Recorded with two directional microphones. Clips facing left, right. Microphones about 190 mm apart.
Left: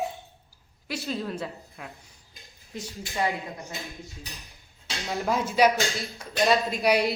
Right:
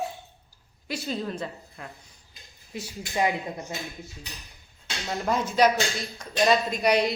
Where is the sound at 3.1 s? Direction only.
15° right (ahead or behind).